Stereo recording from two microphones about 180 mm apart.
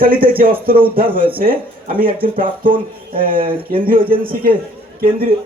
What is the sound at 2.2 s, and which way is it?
Speech, 50° right (ahead or behind).